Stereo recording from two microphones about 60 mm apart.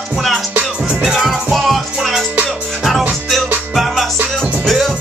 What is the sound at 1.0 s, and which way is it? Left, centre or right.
Music, centre.